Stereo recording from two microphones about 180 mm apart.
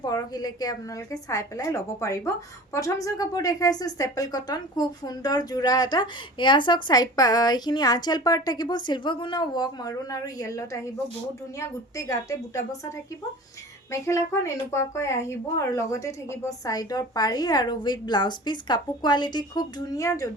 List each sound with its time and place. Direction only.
0.0 s a woman's voice: 20° left (ahead or behind)
14.0 s speech: 15° left (ahead or behind)